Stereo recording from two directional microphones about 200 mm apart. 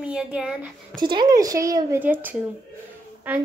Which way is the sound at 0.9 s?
20° right (ahead or behind).